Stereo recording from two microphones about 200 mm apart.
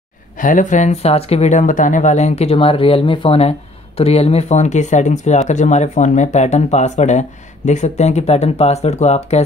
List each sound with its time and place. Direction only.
0.4 s speech: 40° left (ahead or behind)